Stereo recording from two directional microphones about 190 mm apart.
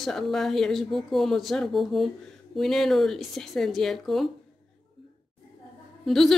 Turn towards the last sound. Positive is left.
turn(degrees=0)  # may be behind; listen again after turning